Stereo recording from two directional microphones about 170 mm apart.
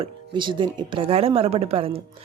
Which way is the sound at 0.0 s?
30° right (ahead or behind).